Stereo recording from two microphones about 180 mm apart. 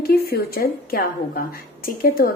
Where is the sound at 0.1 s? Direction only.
55° left (ahead or behind).